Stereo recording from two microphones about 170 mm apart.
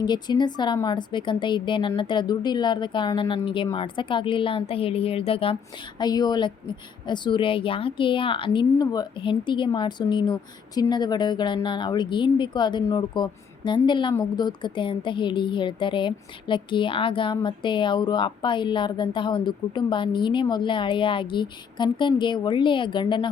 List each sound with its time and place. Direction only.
0.0 s a woman's voice: 25° left (ahead or behind)